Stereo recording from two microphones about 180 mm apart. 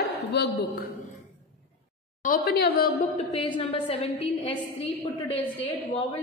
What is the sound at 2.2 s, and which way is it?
Speech, 55° left (ahead or behind).